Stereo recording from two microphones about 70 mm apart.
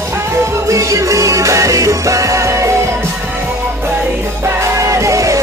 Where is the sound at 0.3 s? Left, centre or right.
Right.